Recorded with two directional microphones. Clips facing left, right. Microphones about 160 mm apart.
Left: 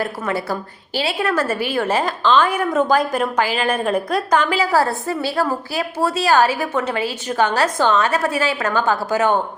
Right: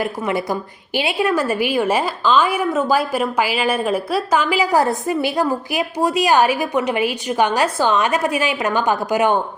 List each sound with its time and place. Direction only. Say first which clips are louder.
0.0 s a woman's voice: right 2 dB; 15° right (ahead or behind)